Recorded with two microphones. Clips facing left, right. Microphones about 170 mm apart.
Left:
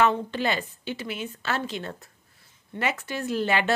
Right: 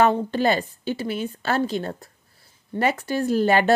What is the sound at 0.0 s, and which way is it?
Speech, 40° right (ahead or behind).